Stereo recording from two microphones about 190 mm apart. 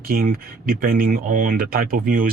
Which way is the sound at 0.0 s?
50° right (ahead or behind).